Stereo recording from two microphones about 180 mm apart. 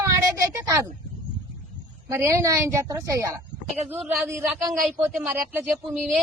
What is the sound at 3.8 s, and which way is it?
Speech, centre (ahead or behind).